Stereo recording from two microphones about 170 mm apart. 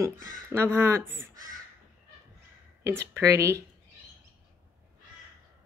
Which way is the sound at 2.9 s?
15° right (ahead or behind).